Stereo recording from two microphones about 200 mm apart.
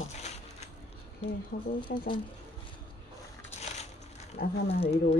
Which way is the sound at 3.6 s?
35° left (ahead or behind).